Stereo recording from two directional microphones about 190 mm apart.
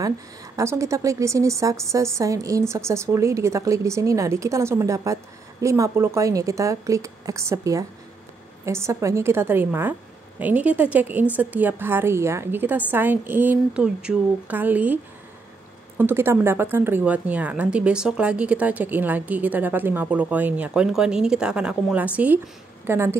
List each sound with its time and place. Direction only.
0.6 s a woman's voice: 15° right (ahead or behind)
16.0 s a woman's voice: 10° right (ahead or behind)